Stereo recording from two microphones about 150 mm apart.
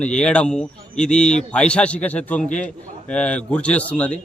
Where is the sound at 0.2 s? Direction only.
5° left (ahead or behind).